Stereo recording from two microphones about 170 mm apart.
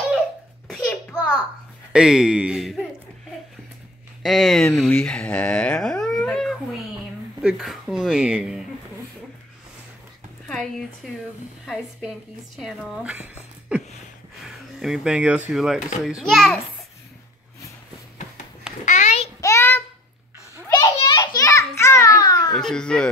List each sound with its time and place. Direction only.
0.7 s a sound: centre (ahead or behind)
1.9 s speech: 5° right (ahead or behind)
4.2 s speech: centre (ahead or behind)
11.0 s speech: centre (ahead or behind)
18.9 s a sound: 45° left (ahead or behind)
19.4 s child singing: 15° left (ahead or behind)
20.6 s a sound: 15° left (ahead or behind)
21.1 s children playing: 25° left (ahead or behind)
22.6 s speech: 5° left (ahead or behind)